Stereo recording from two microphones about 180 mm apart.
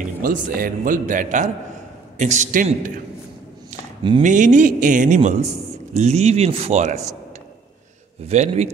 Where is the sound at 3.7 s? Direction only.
40° right (ahead or behind).